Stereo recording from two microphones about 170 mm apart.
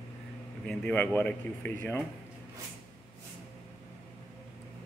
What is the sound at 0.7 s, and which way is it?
Speech, 10° left (ahead or behind).